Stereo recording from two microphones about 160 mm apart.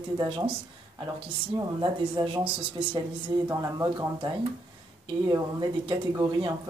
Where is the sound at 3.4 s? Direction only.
20° right (ahead or behind).